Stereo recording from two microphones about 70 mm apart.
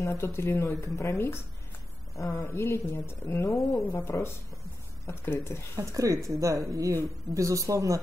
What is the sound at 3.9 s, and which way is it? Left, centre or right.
Speech, left.